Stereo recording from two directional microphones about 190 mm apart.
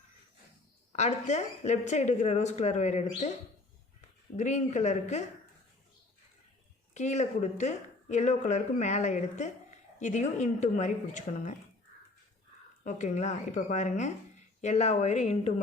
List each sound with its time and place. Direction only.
0.9 s speech: 35° left (ahead or behind)
4.4 s speech: 40° left (ahead or behind)
6.9 s speech: 40° left (ahead or behind)
12.8 s speech: 40° left (ahead or behind)